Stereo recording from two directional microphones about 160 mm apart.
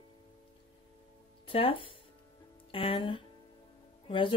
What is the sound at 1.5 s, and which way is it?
Speech, 35° left (ahead or behind).